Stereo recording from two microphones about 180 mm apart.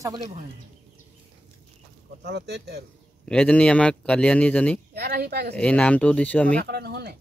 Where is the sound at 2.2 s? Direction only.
70° right (ahead or behind).